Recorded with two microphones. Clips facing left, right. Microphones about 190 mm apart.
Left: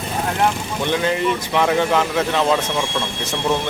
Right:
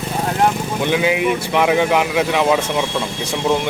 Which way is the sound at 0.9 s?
10° right (ahead or behind).